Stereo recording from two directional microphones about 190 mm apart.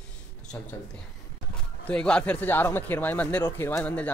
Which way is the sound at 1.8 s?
5° left (ahead or behind).